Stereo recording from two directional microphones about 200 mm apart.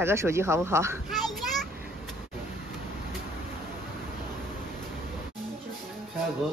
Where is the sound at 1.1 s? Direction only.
Centre (ahead or behind).